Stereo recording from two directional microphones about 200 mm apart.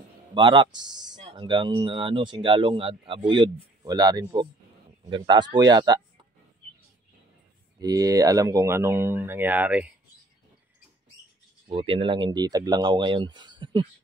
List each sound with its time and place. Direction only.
0.3 s speech: 25° right (ahead or behind)
7.8 s speech: 15° right (ahead or behind)
11.6 s speech: 25° right (ahead or behind)